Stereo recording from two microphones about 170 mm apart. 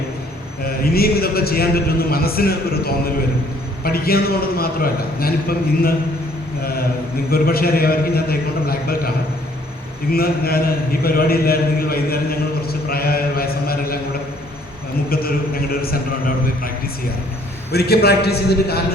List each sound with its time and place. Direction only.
0.6 s a man's voice: 60° left (ahead or behind)
7.3 s a man's voice: 65° left (ahead or behind)
10.1 s a man's voice: 65° left (ahead or behind)
11.0 s a sound: 65° left (ahead or behind)
15.1 s a sound: 60° left (ahead or behind)
17.7 s a man's voice: 70° left (ahead or behind)